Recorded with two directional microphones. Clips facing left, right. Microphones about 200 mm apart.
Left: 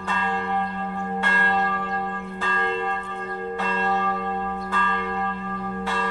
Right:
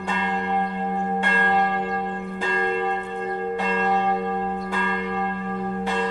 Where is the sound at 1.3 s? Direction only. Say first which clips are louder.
Right 2 dB; 15° right (ahead or behind).